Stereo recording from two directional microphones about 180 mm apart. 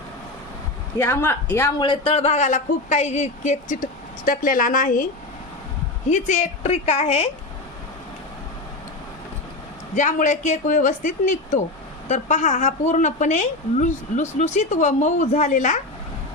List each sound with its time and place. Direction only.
0.9 s speech: 10° left (ahead or behind)
1.8 s a woman's voice: 30° left (ahead or behind); by 5.0 s 50° left (ahead or behind)
6.1 s a woman's voice: 40° left (ahead or behind)
9.9 s a woman's voice: 45° left (ahead or behind)